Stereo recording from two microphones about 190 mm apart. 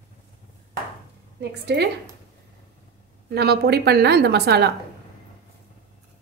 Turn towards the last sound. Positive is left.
turn(degrees=-60)  # may be behind; listen again after turning